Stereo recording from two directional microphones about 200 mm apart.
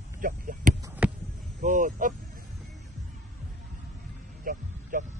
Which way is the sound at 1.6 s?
40° right (ahead or behind).